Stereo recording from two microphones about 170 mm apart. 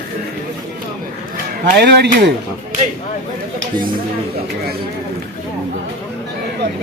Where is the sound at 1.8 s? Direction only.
80° right.